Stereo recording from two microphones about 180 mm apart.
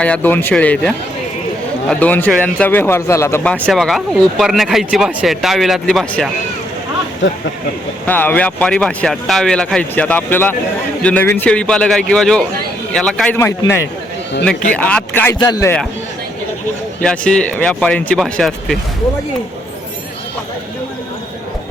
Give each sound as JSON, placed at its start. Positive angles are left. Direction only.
{"t": 0.0, "sound": "speech", "side_deg": 10}
{"t": 8.0, "sound": "speech", "side_deg": 10}
{"t": 15.4, "sound": "speech", "side_deg": 20}
{"t": 17.0, "sound": "speech", "side_deg": 5}